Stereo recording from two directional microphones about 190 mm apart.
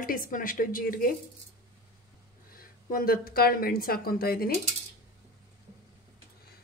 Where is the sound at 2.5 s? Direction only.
50° left (ahead or behind).